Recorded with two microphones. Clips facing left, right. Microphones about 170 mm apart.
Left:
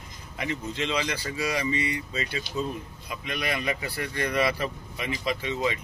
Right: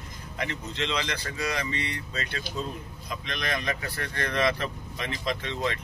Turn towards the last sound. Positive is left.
turn(degrees=10)  # may be behind; listen again after turning